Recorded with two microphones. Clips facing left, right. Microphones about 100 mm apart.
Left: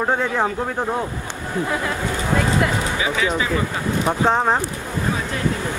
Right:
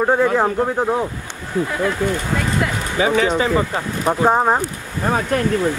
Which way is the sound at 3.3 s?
30° right (ahead or behind).